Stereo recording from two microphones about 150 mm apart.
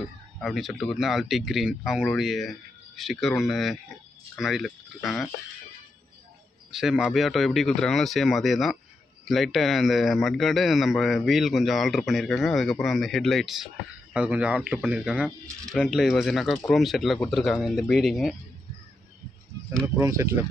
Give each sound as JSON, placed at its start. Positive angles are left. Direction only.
{"t": 0.4, "sound": "speech", "side_deg": 0}
{"t": 6.7, "sound": "speech", "side_deg": -5}
{"t": 20.0, "sound": "speech", "side_deg": -20}